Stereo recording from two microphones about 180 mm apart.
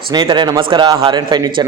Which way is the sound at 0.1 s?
25° right (ahead or behind).